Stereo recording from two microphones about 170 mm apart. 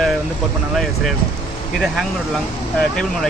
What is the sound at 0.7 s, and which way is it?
Speech, centre (ahead or behind).